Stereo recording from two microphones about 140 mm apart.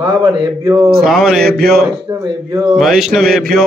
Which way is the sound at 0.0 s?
30° right (ahead or behind).